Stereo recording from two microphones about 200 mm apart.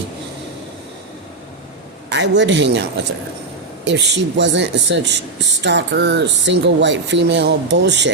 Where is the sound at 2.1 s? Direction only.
60° right (ahead or behind).